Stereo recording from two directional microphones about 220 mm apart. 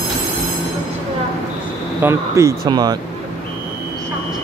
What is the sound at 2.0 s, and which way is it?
Speech, 15° right (ahead or behind).